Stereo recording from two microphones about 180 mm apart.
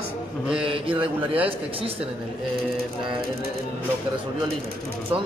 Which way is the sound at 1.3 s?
30° right (ahead or behind).